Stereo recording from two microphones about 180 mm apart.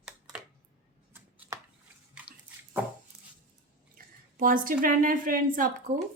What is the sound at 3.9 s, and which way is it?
A woman's voice, 50° right (ahead or behind).